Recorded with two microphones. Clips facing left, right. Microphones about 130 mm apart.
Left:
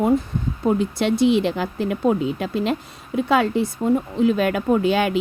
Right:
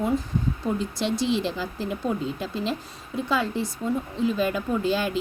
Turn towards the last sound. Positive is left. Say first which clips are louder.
# left 6 dB
turn(degrees=65)  # may be behind; listen again after turning